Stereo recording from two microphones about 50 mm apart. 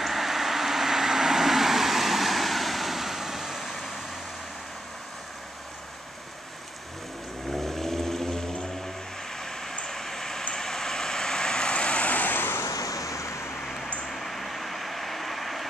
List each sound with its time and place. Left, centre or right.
0.0 s vehicle: centre
7.6 s vehicle: centre; by 12.5 s left
13.1 s vehicle: left
14.0 s a sound: centre